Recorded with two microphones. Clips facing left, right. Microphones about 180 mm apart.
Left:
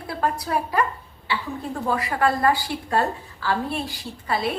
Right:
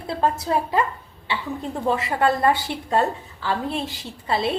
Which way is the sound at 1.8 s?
25° right (ahead or behind).